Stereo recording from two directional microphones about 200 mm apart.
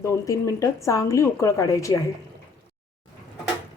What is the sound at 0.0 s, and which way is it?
A woman's voice, 15° left (ahead or behind).